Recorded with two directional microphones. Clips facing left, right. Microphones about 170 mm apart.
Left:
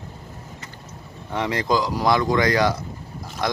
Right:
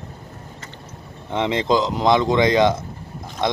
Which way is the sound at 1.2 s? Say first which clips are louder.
Right 3 dB; 20° right (ahead or behind).